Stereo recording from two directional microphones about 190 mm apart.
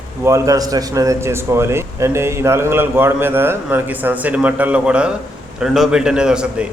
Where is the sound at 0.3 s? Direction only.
15° right (ahead or behind).